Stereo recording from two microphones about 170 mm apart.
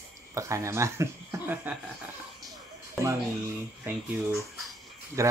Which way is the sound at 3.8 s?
10° right (ahead or behind).